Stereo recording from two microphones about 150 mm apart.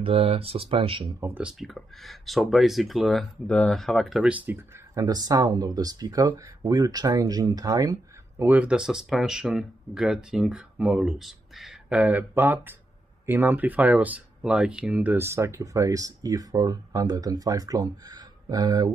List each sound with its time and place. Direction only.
0.0 s speech: 40° right (ahead or behind)
1.0 s speech: 10° right (ahead or behind)
4.9 s speech: 25° right (ahead or behind)
8.5 s speech: 10° right (ahead or behind); by 18.9 s 25° right (ahead or behind)